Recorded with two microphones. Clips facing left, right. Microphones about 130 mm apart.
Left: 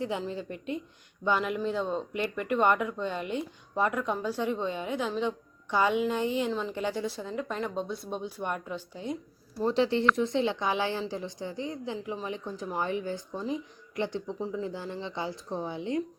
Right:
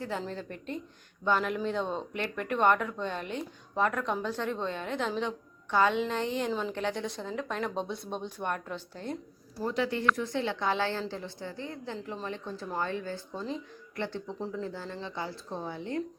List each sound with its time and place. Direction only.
0.2 s speech: 10° left (ahead or behind)
6.5 s speech: centre (ahead or behind)
9.6 s a woman's voice: 25° left (ahead or behind)